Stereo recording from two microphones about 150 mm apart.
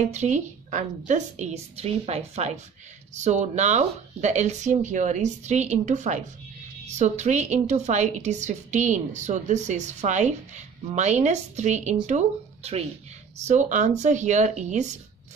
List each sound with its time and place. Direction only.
0.1 s a woman's voice: 50° right (ahead or behind)
13.5 s a woman's voice: 55° right (ahead or behind)